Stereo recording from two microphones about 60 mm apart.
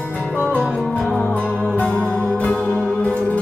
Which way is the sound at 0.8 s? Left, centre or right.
Left.